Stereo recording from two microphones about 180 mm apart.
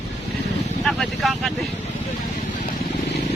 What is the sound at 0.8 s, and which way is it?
Speech, centre (ahead or behind).